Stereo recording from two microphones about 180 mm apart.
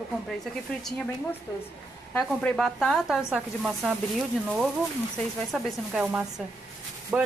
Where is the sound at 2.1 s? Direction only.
5° left (ahead or behind).